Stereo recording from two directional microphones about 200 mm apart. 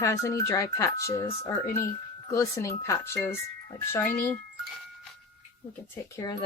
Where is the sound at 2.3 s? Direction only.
15° left (ahead or behind).